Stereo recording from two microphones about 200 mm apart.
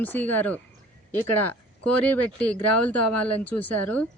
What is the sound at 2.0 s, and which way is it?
A man's voice, 5° left (ahead or behind).